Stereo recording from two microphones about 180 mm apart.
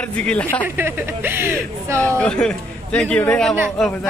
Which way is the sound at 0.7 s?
10° right (ahead or behind).